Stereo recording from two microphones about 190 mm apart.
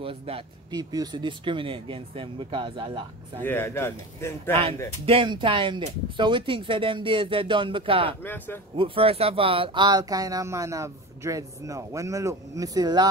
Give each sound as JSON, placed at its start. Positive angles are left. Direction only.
{"t": 0.0, "sound": "speech", "side_deg": -30}
{"t": 3.4, "sound": "a man's voice", "side_deg": 10}
{"t": 5.0, "sound": "speech", "side_deg": -25}
{"t": 8.2, "sound": "a man's voice", "side_deg": 10}
{"t": 8.7, "sound": "speech", "side_deg": -30}